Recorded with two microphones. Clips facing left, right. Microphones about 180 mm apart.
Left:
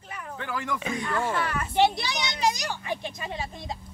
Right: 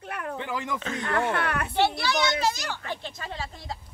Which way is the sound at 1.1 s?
60° right (ahead or behind).